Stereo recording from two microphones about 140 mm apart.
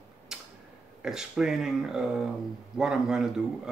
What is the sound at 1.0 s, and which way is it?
Speech, 5° right (ahead or behind).